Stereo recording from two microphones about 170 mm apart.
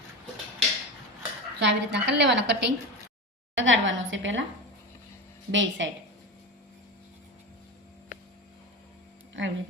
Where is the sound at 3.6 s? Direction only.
90° right.